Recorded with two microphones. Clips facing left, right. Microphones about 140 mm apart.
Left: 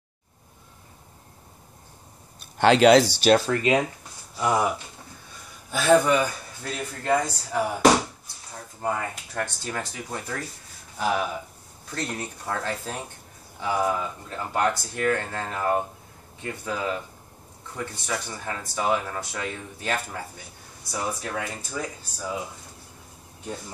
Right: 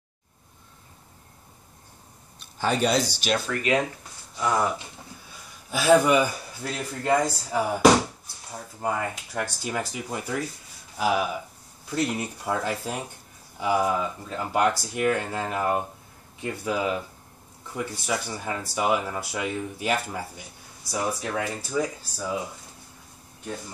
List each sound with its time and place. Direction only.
2.5 s speech: 85° left
3.3 s speech: 35° left (ahead or behind)
4.4 s speech: 10° left (ahead or behind)
5.7 s speech: 5° right (ahead or behind)
21.4 s speech: 15° right (ahead or behind)